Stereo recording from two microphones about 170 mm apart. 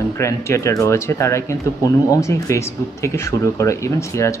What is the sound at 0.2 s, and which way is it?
Speech, 15° left (ahead or behind).